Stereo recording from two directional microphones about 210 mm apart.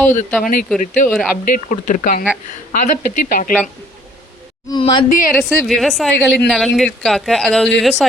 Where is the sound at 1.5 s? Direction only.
40° left (ahead or behind).